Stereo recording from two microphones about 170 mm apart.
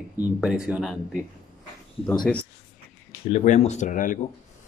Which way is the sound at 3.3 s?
40° left (ahead or behind).